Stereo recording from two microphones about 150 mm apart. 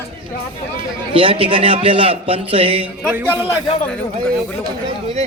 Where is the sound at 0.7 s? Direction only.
35° right (ahead or behind).